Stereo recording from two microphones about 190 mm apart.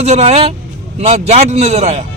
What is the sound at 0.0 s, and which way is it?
A man's voice, 35° right (ahead or behind).